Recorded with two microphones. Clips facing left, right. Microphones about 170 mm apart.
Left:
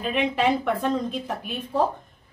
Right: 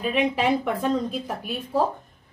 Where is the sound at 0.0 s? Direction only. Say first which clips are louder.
Even; 5° right (ahead or behind).